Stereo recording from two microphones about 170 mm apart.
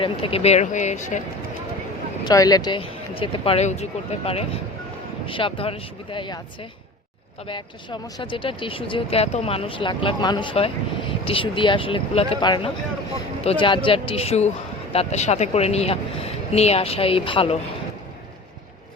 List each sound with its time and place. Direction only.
0.0 s speech: 30° left (ahead or behind)
2.2 s speech: 20° left (ahead or behind)